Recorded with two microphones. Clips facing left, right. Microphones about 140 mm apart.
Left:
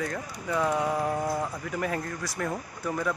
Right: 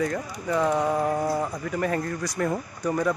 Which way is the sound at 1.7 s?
5° left (ahead or behind).